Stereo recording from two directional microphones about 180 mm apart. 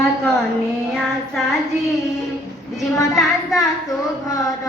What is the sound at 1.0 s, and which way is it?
Child singing, centre (ahead or behind).